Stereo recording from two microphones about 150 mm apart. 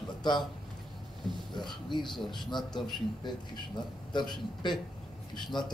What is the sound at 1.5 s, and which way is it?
A man's voice, 30° left (ahead or behind).